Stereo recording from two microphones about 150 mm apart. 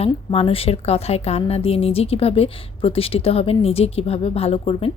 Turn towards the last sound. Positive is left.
turn(degrees=40)  # may be behind; listen again after turning